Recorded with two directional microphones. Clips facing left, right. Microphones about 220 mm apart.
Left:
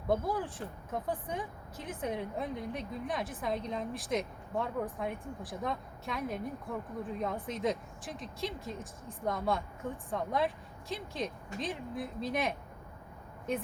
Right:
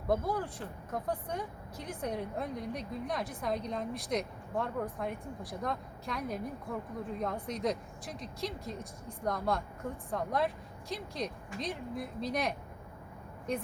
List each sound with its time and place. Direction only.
0.1 s speech: centre (ahead or behind)